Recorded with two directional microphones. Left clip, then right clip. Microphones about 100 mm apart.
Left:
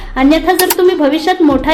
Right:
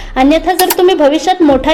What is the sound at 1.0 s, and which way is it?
Speech, 35° right (ahead or behind).